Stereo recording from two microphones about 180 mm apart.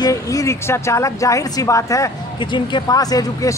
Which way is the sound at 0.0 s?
20° left (ahead or behind).